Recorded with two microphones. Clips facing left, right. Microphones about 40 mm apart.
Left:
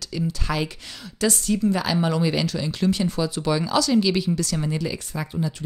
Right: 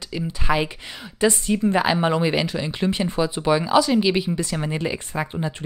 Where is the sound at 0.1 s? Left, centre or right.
Right.